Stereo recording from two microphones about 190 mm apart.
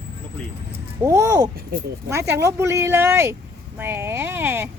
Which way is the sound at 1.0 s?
15° right (ahead or behind).